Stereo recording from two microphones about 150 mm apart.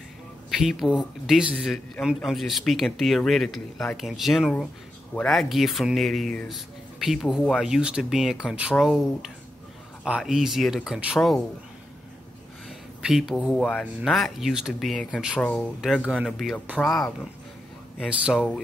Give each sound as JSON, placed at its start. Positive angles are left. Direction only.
{"t": 0.5, "sound": "speech", "side_deg": 0}
{"t": 12.6, "sound": "a sound", "side_deg": -5}
{"t": 14.0, "sound": "speech", "side_deg": 0}
{"t": 15.4, "sound": "speech", "side_deg": 5}